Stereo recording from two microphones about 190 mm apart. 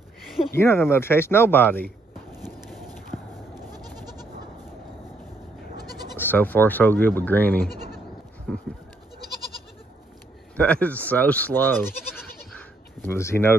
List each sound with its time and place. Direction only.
0.6 s speech: 15° left (ahead or behind)
2.6 s clip-clop: centre (ahead or behind)
3.5 s goat: 20° right (ahead or behind)
6.1 s speech: 10° left (ahead or behind)
7.7 s goat: 50° left (ahead or behind)
8.5 s speech: centre (ahead or behind)
10.5 s speech: 5° left (ahead or behind)
12.5 s a sound: 10° left (ahead or behind)